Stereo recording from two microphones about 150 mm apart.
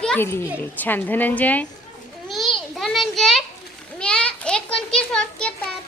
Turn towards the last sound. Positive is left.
turn(degrees=5)  # may be behind; listen again after turning